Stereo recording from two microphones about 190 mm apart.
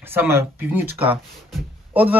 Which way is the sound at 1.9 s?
10° right (ahead or behind).